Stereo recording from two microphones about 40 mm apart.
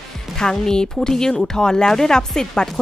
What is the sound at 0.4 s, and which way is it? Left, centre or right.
Speech, centre.